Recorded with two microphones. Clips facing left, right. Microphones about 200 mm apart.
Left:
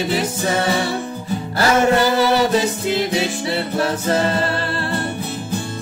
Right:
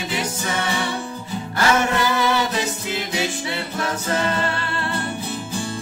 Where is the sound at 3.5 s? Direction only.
35° left (ahead or behind).